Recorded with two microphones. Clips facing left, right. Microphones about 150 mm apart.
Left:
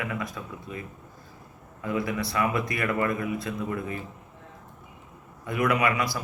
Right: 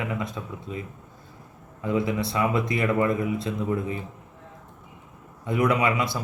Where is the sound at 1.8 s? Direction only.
25° right (ahead or behind).